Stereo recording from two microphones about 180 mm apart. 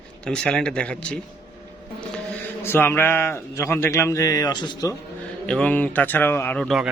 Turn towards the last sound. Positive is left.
turn(degrees=0)  # may be behind; listen again after turning